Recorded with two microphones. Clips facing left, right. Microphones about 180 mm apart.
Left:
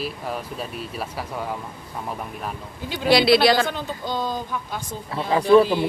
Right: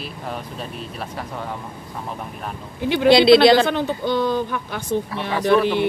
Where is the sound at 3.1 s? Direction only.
25° right (ahead or behind).